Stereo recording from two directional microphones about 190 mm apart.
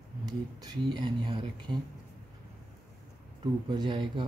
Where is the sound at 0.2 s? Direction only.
20° right (ahead or behind).